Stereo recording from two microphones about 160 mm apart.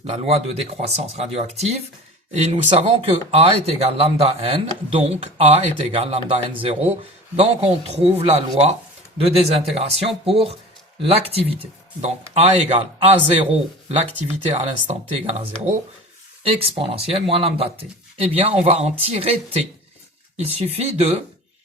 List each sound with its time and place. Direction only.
0.0 s a man's voice: 40° right (ahead or behind)
16.4 s speech: 35° right (ahead or behind)